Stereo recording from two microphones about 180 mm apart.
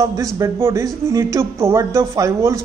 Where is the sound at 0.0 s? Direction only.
20° right (ahead or behind).